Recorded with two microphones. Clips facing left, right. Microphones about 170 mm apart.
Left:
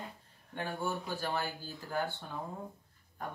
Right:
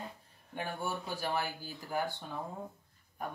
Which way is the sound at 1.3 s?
15° right (ahead or behind).